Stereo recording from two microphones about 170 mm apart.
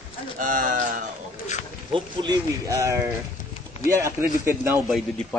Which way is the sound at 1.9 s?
25° right (ahead or behind).